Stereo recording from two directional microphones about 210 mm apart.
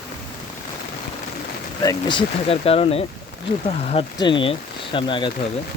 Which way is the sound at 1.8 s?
20° left (ahead or behind).